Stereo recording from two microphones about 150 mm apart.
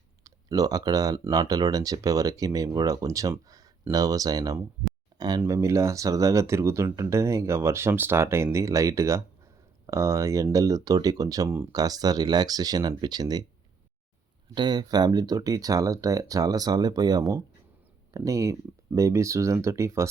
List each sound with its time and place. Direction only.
0.3 s speech: 25° right (ahead or behind)
14.5 s speech: 30° right (ahead or behind)